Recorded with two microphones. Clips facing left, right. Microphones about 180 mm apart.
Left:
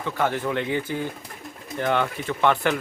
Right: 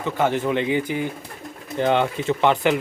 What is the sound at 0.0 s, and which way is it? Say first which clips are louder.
Speech: right 3 dB; 20° right (ahead or behind).